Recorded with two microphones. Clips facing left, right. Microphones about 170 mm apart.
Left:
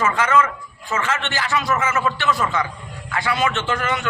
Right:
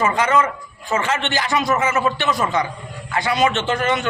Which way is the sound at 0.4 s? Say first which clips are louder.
Right 3 dB; 30° right (ahead or behind).